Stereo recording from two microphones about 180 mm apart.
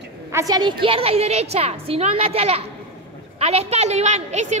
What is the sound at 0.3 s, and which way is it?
A woman's voice, 20° right (ahead or behind).